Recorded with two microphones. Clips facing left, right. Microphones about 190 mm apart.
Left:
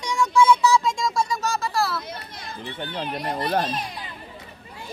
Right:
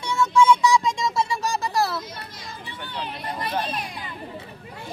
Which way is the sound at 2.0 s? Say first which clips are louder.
Left 1 dB; 60° left (ahead or behind).